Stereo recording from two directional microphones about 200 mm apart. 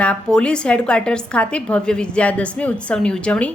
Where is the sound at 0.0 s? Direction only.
5° left (ahead or behind).